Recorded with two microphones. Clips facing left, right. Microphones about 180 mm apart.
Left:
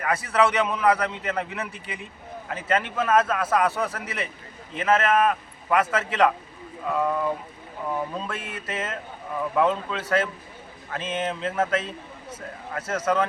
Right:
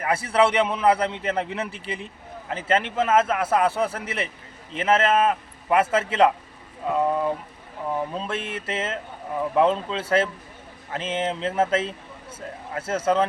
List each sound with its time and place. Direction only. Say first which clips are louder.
0.0 s a man's voice: right 2 dB; 30° right (ahead or behind)